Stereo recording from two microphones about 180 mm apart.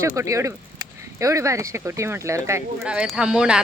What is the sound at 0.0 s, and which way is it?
Speech, 15° right (ahead or behind).